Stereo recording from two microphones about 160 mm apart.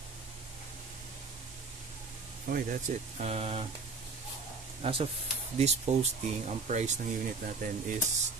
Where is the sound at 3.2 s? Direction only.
40° right (ahead or behind).